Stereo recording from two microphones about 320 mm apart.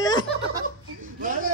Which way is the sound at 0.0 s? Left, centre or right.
Centre.